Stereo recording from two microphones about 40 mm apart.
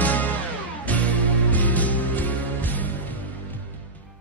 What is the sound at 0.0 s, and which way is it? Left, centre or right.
Music, left.